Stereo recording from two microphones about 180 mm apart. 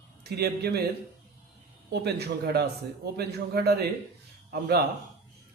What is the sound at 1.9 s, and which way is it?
A man's voice, 65° right (ahead or behind).